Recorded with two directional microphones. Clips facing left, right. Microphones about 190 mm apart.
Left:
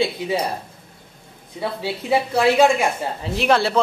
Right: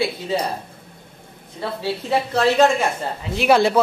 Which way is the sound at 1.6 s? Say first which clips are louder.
Even; 10° left (ahead or behind).